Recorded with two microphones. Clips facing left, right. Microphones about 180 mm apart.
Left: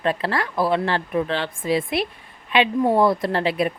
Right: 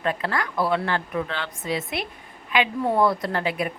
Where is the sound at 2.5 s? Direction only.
25° left (ahead or behind).